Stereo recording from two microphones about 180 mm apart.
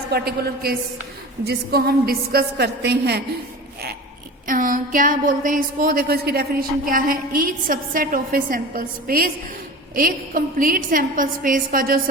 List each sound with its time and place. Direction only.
0.1 s a woman's voice: 55° right (ahead or behind)
4.4 s speech: 50° right (ahead or behind)